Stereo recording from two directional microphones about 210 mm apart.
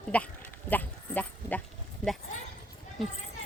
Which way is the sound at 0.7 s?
10° left (ahead or behind).